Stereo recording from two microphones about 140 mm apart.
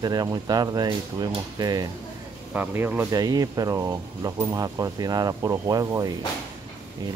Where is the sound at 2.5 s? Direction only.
15° right (ahead or behind).